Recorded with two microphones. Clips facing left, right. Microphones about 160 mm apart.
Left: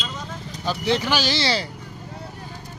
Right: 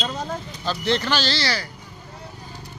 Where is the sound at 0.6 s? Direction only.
10° left (ahead or behind).